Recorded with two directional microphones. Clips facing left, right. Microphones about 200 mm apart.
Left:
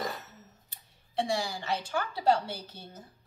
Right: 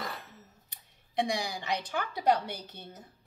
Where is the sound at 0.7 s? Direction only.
15° right (ahead or behind).